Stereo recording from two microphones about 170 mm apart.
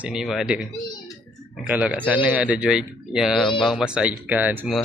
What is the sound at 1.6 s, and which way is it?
Speech, 5° right (ahead or behind).